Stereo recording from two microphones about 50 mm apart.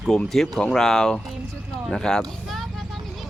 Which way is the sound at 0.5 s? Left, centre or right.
Centre.